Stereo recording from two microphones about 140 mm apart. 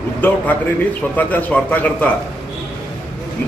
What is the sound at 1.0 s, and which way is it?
A man's voice, 10° left (ahead or behind).